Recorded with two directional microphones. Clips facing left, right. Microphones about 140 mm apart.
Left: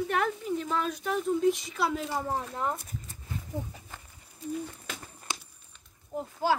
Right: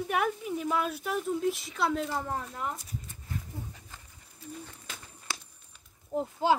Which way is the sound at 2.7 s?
55° left (ahead or behind).